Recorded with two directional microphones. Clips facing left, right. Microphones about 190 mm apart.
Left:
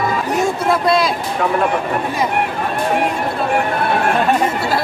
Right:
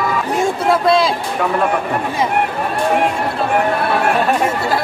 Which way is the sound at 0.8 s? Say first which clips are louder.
Right 2 dB; 25° right (ahead or behind).